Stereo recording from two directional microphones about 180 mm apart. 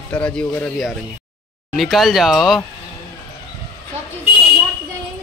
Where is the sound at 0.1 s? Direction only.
5° left (ahead or behind).